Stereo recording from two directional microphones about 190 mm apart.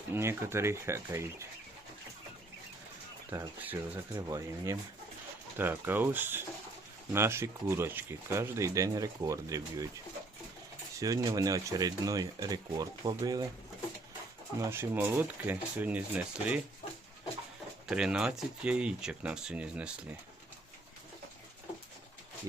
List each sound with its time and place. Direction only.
0.1 s speech: 15° right (ahead or behind)
3.3 s speech: 15° right (ahead or behind)
11.0 s speech: 20° right (ahead or behind)
14.6 s speech: 10° right (ahead or behind)
17.8 s speech: 5° right (ahead or behind)